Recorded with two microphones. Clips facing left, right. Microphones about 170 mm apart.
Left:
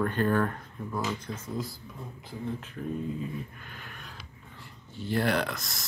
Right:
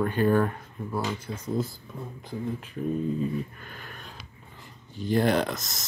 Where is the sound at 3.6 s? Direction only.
40° right (ahead or behind).